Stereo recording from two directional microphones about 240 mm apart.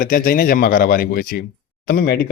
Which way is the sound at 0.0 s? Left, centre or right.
Left.